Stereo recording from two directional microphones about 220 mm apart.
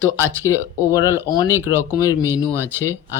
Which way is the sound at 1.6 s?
10° right (ahead or behind).